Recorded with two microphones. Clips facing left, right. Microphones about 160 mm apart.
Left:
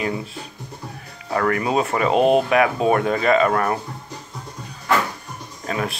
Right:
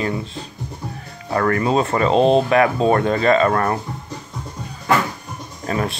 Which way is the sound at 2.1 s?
30° right (ahead or behind).